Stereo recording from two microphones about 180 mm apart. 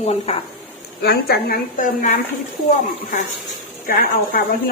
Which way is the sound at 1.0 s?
60° left (ahead or behind).